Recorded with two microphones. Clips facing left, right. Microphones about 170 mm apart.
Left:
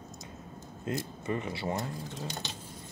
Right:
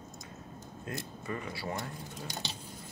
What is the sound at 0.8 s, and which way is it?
Speech, 25° left (ahead or behind).